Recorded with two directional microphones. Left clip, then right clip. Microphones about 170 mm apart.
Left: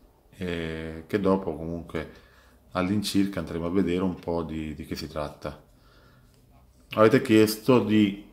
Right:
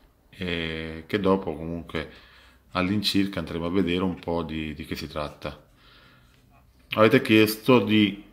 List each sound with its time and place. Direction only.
0.3 s speech: 15° right (ahead or behind)
6.9 s speech: 15° right (ahead or behind)